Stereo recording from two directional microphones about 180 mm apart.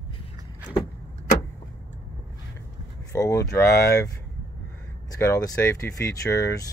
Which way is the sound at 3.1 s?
15° left (ahead or behind).